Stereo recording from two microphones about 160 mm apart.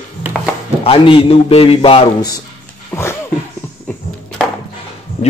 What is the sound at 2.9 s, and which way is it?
Speech, 15° left (ahead or behind).